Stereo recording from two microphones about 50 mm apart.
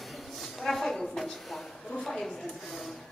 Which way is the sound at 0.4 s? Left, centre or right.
Centre.